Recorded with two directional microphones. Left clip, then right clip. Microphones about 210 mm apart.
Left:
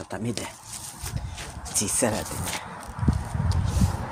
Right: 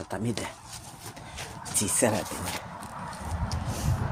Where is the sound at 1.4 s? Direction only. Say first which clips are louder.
Left 2 dB; 10° left (ahead or behind).